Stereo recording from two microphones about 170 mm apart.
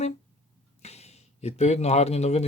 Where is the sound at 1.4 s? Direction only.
40° left (ahead or behind).